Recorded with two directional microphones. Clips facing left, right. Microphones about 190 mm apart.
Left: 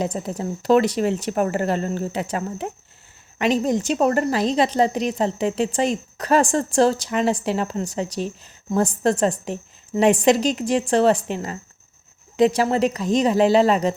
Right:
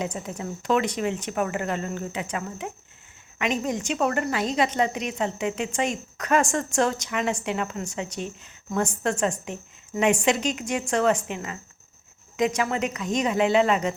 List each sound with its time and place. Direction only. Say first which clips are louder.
0.0 s speech: left 5 dB; 35° left (ahead or behind)